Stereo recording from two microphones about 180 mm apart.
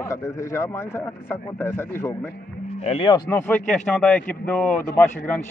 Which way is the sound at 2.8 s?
30° left (ahead or behind).